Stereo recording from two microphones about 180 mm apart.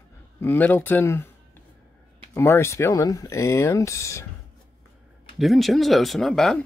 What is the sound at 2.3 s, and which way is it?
Speech, 15° left (ahead or behind).